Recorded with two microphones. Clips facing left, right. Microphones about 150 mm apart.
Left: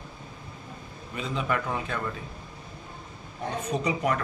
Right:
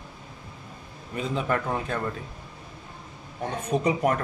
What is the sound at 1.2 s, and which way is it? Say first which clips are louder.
Speech: right 2 dB; 45° right (ahead or behind).